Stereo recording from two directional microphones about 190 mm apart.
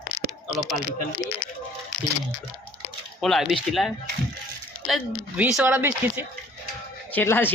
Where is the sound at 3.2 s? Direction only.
Centre (ahead or behind).